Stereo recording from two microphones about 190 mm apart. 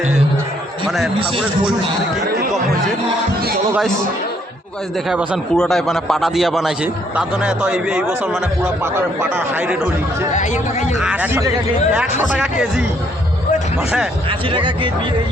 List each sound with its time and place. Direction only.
0.9 s a man's voice: centre (ahead or behind)
5.0 s a man's voice: 5° right (ahead or behind)
10.3 s speech: 40° left (ahead or behind)
11.0 s a man's voice: 10° right (ahead or behind)
14.3 s speech: 25° right (ahead or behind)